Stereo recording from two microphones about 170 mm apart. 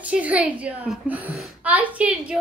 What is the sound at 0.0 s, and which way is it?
A woman's voice, 10° right (ahead or behind).